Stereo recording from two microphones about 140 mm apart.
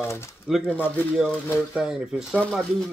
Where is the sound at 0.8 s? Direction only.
15° left (ahead or behind).